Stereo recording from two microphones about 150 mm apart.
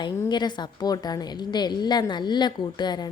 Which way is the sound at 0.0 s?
30° left (ahead or behind).